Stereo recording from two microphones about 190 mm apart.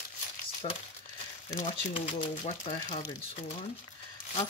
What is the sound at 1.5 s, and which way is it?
Speech, 30° left (ahead or behind).